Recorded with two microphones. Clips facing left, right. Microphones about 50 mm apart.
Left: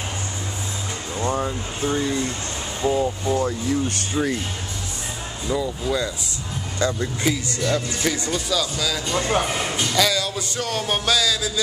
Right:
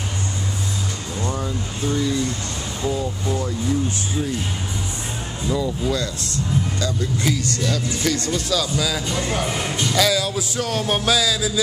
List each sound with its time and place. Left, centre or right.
1.1 s speech: left
4.1 s speech: left
5.5 s speech: centre
6.8 s speech: left
7.2 s speech: centre
8.5 s music: centre
9.1 s speech: left
9.5 s speech: centre
9.9 s music: centre